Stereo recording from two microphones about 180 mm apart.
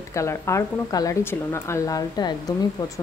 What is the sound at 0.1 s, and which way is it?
Speech, 15° left (ahead or behind).